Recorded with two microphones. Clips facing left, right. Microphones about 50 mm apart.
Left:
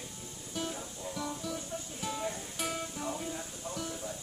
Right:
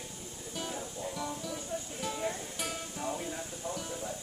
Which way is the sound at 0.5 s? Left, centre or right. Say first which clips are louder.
Left 1 dB; centre.